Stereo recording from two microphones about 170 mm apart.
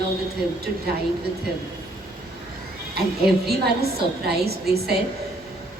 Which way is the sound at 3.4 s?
70° right (ahead or behind).